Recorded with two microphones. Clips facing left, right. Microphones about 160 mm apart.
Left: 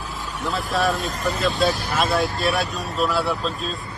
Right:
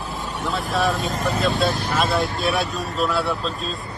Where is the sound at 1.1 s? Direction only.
40° right (ahead or behind).